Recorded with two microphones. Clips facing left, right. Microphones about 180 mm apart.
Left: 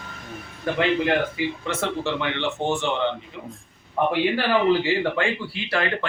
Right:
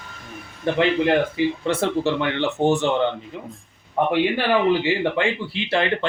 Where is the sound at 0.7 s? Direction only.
25° right (ahead or behind).